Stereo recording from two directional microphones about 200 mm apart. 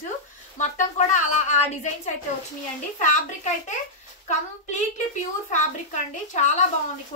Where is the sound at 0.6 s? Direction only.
35° left (ahead or behind).